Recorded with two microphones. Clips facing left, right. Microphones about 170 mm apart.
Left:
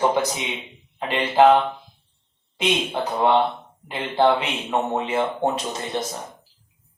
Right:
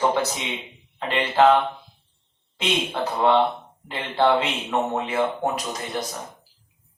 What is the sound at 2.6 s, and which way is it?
A man's voice, 15° left (ahead or behind).